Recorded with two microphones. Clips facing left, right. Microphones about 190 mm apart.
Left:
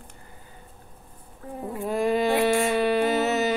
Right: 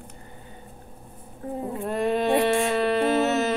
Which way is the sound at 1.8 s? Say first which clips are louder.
Left 1 dB; centre (ahead or behind).